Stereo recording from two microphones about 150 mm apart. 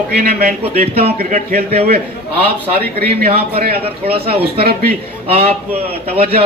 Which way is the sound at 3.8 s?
40° right (ahead or behind).